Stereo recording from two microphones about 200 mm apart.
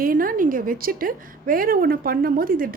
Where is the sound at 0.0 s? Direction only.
45° right (ahead or behind).